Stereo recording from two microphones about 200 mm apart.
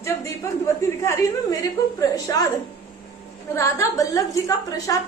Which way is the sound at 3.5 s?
15° left (ahead or behind).